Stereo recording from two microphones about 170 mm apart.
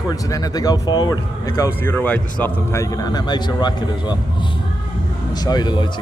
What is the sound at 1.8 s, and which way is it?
Speech, 10° left (ahead or behind).